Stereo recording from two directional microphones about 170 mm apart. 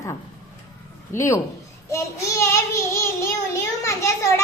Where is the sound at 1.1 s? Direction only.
15° left (ahead or behind).